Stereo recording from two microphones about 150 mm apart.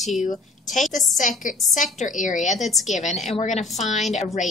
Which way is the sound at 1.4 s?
60° left (ahead or behind).